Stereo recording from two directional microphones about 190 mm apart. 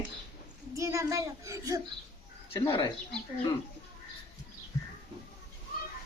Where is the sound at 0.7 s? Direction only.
15° right (ahead or behind).